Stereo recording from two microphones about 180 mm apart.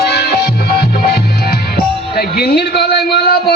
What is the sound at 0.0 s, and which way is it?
Music, 60° left (ahead or behind).